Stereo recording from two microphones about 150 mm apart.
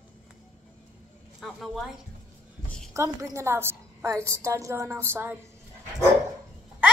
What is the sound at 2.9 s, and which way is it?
A woman's voice, 20° right (ahead or behind).